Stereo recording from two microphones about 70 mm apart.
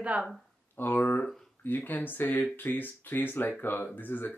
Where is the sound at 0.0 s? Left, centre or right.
Centre.